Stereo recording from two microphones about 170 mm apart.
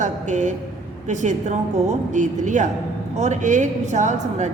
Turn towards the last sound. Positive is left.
turn(degrees=-45)  # may be behind; listen again after turning